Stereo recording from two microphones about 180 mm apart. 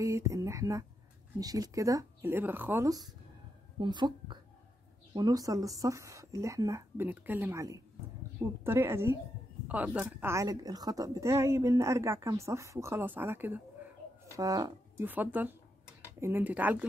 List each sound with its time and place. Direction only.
0.0 s a woman's voice: 15° right (ahead or behind)
3.8 s a woman's voice: 25° right (ahead or behind)
15.0 s a woman's voice: 10° right (ahead or behind)